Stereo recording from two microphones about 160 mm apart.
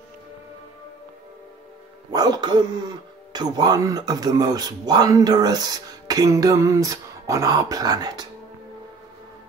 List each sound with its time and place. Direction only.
2.0 s speech: 25° right (ahead or behind)